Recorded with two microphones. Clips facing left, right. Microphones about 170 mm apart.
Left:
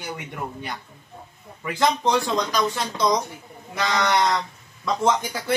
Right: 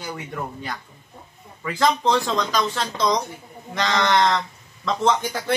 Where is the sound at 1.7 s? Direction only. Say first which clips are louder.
Right 1 dB; 20° left (ahead or behind).